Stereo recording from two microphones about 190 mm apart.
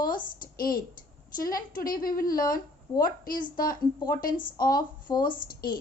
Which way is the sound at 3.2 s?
45° left (ahead or behind).